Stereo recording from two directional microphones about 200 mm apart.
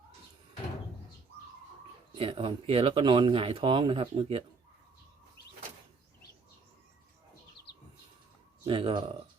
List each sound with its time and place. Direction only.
2.1 s speech: 25° right (ahead or behind)
8.6 s speech: 25° right (ahead or behind)